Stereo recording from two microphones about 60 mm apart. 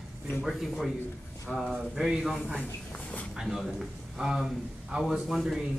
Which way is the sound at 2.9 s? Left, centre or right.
Left.